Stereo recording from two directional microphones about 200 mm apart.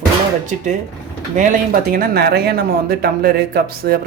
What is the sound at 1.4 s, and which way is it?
Speech, 45° right (ahead or behind).